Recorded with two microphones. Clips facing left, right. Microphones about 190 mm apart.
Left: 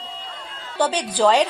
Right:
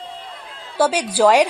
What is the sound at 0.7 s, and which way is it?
Speech, 10° right (ahead or behind).